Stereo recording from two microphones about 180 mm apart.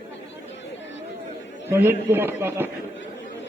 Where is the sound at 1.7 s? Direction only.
10° right (ahead or behind).